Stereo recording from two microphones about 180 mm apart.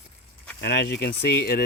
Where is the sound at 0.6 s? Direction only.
65° left (ahead or behind).